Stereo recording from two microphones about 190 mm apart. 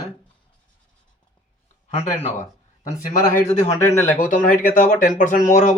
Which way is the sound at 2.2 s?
35° left (ahead or behind).